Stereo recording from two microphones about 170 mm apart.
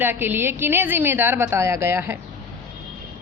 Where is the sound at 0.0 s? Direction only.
10° right (ahead or behind).